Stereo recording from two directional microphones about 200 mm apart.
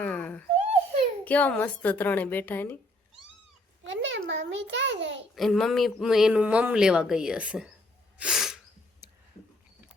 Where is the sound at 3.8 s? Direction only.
65° right (ahead or behind).